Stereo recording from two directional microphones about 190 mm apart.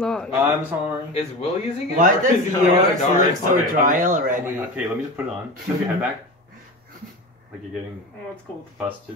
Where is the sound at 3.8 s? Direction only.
45° right (ahead or behind).